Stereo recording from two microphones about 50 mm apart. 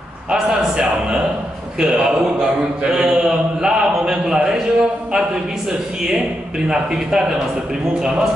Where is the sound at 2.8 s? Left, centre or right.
Centre.